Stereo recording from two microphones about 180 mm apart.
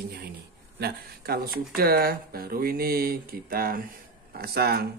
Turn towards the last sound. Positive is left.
turn(degrees=-60)  # may be behind; listen again after turning